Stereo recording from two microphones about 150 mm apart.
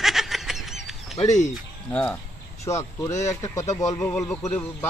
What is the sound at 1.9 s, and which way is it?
Speech, 15° left (ahead or behind).